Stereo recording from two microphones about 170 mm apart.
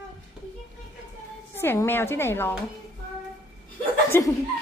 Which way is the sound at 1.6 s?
15° left (ahead or behind).